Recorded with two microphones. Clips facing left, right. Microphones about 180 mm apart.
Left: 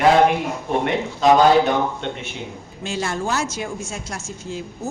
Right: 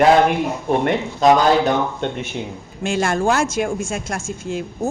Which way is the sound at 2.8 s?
50° right (ahead or behind).